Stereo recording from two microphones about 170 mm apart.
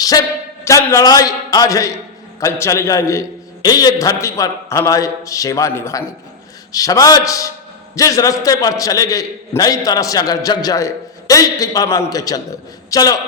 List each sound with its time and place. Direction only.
0.0 s a man's voice: 20° left (ahead or behind)